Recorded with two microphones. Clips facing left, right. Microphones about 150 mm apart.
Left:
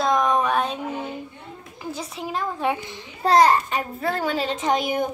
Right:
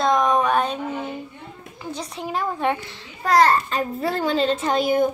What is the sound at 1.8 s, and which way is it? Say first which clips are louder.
A child's voice: right 1 dB; 5° left (ahead or behind).